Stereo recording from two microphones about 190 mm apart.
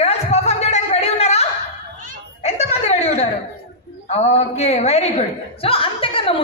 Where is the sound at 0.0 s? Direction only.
35° left (ahead or behind).